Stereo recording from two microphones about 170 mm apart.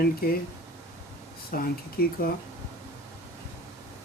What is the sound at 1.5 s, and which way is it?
Speech, 60° left (ahead or behind).